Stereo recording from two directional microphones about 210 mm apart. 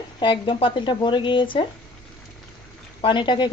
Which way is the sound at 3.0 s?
25° left (ahead or behind).